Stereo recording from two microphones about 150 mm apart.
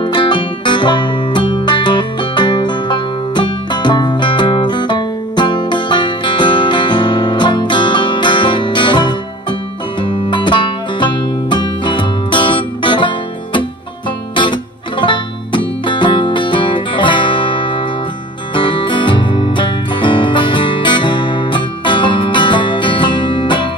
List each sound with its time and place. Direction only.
0.0 s music: 35° left (ahead or behind)